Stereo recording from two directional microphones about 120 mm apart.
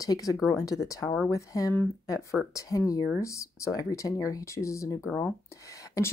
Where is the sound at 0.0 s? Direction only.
30° left (ahead or behind).